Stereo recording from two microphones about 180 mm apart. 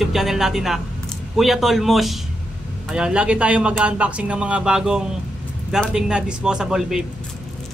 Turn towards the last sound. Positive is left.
turn(degrees=-5)  # may be behind; listen again after turning